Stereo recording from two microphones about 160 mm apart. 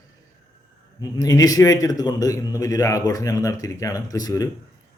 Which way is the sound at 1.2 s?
25° left (ahead or behind).